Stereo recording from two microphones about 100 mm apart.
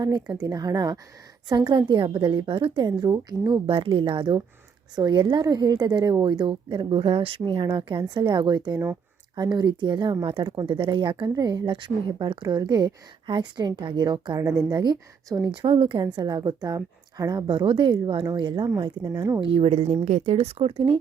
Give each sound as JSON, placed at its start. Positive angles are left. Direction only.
{"t": 0.0, "sound": "a woman's voice", "side_deg": -40}
{"t": 3.7, "sound": "speech", "side_deg": -60}
{"t": 4.9, "sound": "a woman's voice", "side_deg": -45}
{"t": 15.6, "sound": "speech", "side_deg": -60}
{"t": 16.1, "sound": "a woman's voice", "side_deg": -40}
{"t": 19.0, "sound": "speech", "side_deg": -40}
{"t": 19.4, "sound": "speech", "side_deg": -60}